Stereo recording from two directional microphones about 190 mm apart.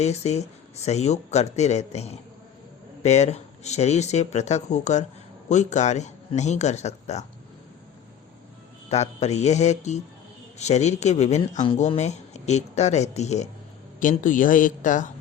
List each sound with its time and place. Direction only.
0.0 s speech: 35° left (ahead or behind)
8.9 s a man's voice: 35° left (ahead or behind)